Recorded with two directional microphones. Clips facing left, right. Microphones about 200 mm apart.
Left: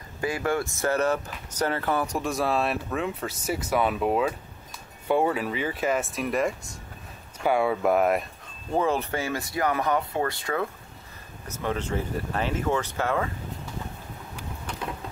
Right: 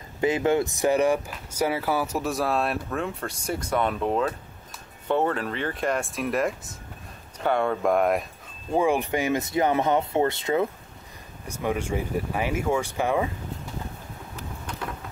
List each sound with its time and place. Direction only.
0.2 s speech: 20° right (ahead or behind); by 8.3 s centre (ahead or behind)
8.7 s speech: 15° right (ahead or behind)